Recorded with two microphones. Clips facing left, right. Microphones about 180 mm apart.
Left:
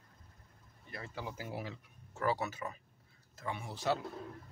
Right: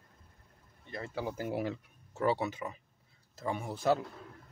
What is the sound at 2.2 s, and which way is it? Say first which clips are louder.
Speech: right 4 dB; 25° right (ahead or behind).